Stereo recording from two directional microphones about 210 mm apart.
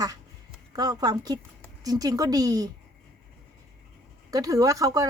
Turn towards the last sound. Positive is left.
turn(degrees=-15)  # may be behind; listen again after turning